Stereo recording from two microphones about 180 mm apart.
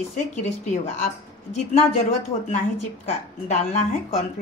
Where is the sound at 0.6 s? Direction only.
40° left (ahead or behind).